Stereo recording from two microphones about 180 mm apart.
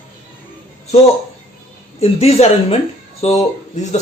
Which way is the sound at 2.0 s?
35° left (ahead or behind).